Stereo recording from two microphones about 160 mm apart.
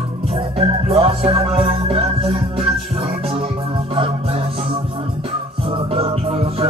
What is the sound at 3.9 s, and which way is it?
Music, 35° right (ahead or behind).